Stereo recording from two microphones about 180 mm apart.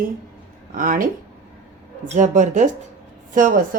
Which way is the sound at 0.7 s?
50° right (ahead or behind).